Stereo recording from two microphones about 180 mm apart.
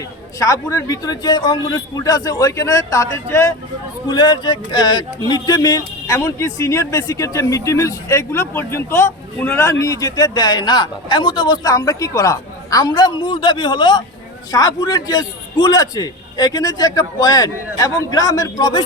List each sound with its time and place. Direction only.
0.3 s speech: 20° left (ahead or behind)